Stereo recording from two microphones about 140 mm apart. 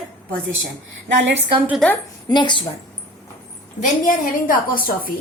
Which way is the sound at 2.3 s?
35° left (ahead or behind).